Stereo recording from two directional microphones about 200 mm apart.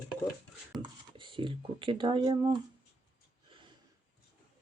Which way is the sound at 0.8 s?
25° right (ahead or behind).